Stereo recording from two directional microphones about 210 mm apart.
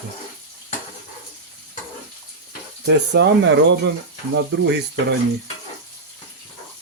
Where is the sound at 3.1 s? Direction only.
55° right (ahead or behind).